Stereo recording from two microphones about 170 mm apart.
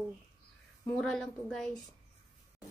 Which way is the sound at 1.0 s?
Centre (ahead or behind).